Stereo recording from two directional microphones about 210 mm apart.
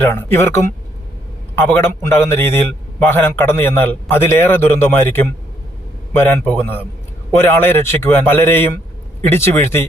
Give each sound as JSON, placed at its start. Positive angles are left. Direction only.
{"t": 0.0, "sound": "a man's voice", "side_deg": 10}